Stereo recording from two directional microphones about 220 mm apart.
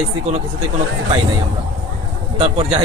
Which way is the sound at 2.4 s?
25° right (ahead or behind).